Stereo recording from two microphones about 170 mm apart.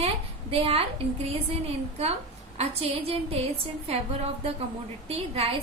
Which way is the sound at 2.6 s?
35° right (ahead or behind).